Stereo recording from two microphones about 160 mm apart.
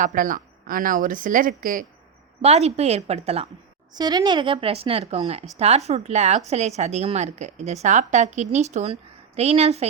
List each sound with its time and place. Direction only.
0.0 s a woman's voice: 55° right (ahead or behind)
2.4 s speech: 40° right (ahead or behind)
3.9 s a woman's voice: 25° right (ahead or behind); by 9.8 s 40° right (ahead or behind)